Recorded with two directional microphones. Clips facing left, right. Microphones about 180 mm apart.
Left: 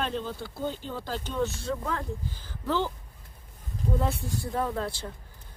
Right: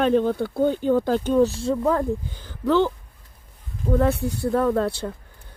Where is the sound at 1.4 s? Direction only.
30° right (ahead or behind).